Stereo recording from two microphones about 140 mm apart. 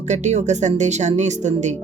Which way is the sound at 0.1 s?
55° right (ahead or behind).